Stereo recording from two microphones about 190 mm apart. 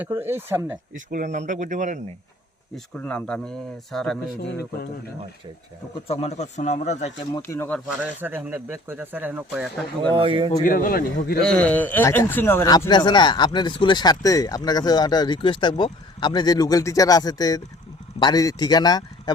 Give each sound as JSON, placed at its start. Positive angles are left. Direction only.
{"t": 0.0, "sound": "speech", "side_deg": -10}
{"t": 0.9, "sound": "speech", "side_deg": -40}
{"t": 2.7, "sound": "speech", "side_deg": 5}
{"t": 6.1, "sound": "speech", "side_deg": 35}
{"t": 7.4, "sound": "speech", "side_deg": 10}
{"t": 8.0, "sound": "speech", "side_deg": -10}
{"t": 10.0, "sound": "speech", "side_deg": -25}
{"t": 10.5, "sound": "a man's voice", "side_deg": 45}
{"t": 11.4, "sound": "a man's voice", "side_deg": 5}